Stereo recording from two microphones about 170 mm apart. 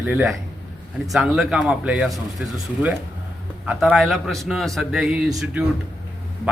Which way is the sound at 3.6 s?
5° right (ahead or behind).